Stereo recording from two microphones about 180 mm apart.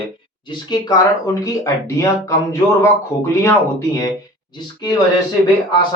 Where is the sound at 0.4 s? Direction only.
20° left (ahead or behind).